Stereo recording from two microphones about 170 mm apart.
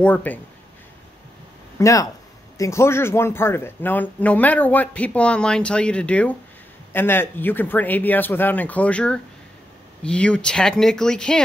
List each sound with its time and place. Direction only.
0.0 s speech: 10° left (ahead or behind)
1.8 s speech: 20° left (ahead or behind)